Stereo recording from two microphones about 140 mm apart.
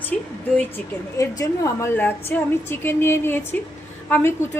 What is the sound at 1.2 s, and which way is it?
A woman's voice, 20° left (ahead or behind).